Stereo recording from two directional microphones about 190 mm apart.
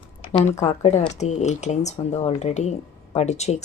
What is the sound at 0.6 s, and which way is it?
Speech, 35° left (ahead or behind).